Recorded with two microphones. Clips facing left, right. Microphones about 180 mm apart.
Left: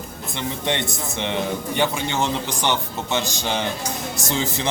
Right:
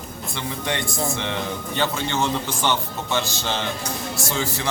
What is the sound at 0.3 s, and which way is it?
A man's voice, 20° left (ahead or behind).